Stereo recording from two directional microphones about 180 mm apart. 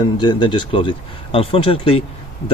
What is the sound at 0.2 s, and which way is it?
Speech, 25° left (ahead or behind).